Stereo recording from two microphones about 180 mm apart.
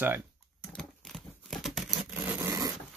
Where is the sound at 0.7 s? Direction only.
Centre (ahead or behind).